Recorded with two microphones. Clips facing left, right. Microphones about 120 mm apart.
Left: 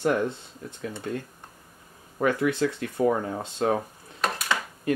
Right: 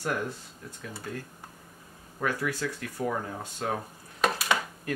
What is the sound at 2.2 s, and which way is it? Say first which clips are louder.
Speech: left 7 dB; 20° left (ahead or behind).